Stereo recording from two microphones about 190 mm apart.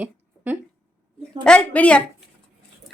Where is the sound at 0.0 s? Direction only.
10° right (ahead or behind).